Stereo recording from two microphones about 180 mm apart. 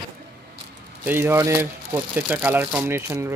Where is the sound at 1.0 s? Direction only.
15° right (ahead or behind).